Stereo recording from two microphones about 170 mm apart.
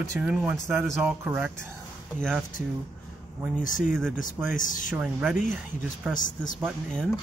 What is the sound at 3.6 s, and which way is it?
Speech, 50° left (ahead or behind).